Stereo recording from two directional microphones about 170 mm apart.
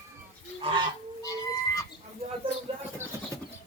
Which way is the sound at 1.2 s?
20° left (ahead or behind).